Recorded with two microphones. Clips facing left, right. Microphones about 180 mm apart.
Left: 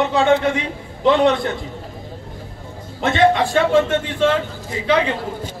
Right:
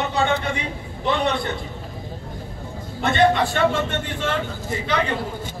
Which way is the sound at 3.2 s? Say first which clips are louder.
Left 3 dB; 90° left.